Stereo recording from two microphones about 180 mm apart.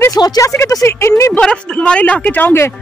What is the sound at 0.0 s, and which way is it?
A woman's voice, 20° left (ahead or behind).